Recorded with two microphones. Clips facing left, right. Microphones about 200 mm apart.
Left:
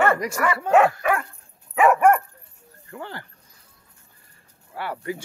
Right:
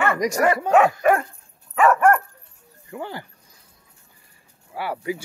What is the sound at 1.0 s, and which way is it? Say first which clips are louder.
Dog: right 5 dB; 40° right (ahead or behind).